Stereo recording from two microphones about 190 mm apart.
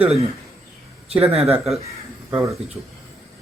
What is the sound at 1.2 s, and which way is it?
Speech, 30° right (ahead or behind).